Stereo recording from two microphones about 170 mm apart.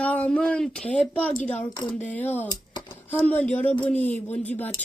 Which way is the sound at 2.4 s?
25° left (ahead or behind).